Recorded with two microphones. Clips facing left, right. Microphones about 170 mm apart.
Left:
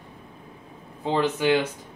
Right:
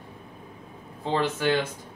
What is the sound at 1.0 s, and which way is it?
Speech, 15° left (ahead or behind).